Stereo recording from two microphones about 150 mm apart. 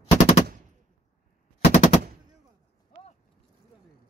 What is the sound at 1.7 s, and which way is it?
Machine gun, 50° left (ahead or behind).